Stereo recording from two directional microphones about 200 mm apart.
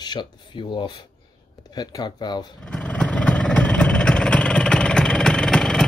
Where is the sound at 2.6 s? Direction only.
5° left (ahead or behind).